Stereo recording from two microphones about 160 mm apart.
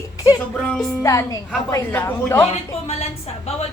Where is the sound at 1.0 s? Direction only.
20° left (ahead or behind).